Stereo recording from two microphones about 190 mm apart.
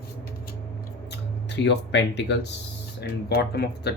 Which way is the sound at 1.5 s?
65° left (ahead or behind).